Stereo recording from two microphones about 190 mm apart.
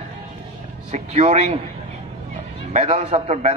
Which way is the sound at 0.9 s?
35° right (ahead or behind).